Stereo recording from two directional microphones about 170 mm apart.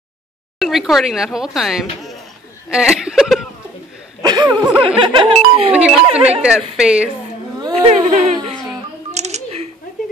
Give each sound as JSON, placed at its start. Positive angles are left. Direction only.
{"t": 0.6, "sound": "speech", "side_deg": 0}
{"t": 4.2, "sound": "a sound", "side_deg": -25}
{"t": 4.7, "sound": "music", "side_deg": -30}
{"t": 5.7, "sound": "speech", "side_deg": -5}
{"t": 7.9, "sound": "speech", "side_deg": -45}
{"t": 9.1, "sound": "a sound", "side_deg": -40}